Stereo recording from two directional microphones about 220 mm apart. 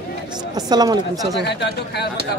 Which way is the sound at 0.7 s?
20° right (ahead or behind).